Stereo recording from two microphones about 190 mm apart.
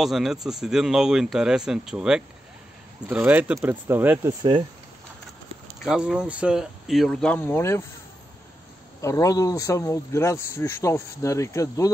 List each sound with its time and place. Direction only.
0.0 s speech: centre (ahead or behind); by 4.6 s 20° right (ahead or behind)
5.9 s speech: 5° right (ahead or behind); by 7.8 s 10° left (ahead or behind)
9.0 s speech: 15° left (ahead or behind)